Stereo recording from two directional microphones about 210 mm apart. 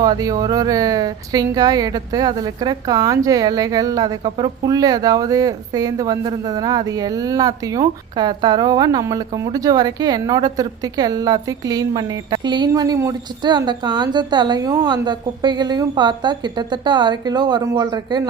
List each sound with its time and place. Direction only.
0.0 s speech: 20° right (ahead or behind)